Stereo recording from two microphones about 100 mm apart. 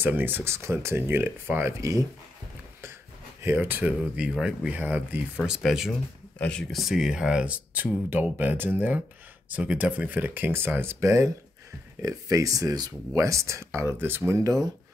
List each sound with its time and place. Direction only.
0.0 s speech: 20° right (ahead or behind)
1.8 s speech: 35° right (ahead or behind)
3.4 s speech: 20° right (ahead or behind)
5.4 s speech: 5° right (ahead or behind)
5.9 s speech: 10° left (ahead or behind); by 14.4 s 20° right (ahead or behind)
14.4 s speech: 40° right (ahead or behind)